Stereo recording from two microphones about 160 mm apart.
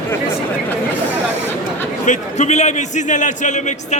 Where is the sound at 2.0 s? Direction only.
50° left (ahead or behind).